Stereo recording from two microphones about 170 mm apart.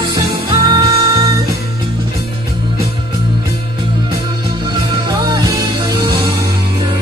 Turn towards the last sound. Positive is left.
turn(degrees=-25)  # may be behind; listen again after turning